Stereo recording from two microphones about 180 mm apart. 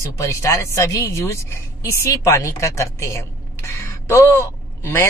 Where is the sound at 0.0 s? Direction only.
15° left (ahead or behind).